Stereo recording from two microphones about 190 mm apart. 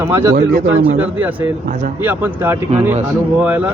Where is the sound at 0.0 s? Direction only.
15° right (ahead or behind).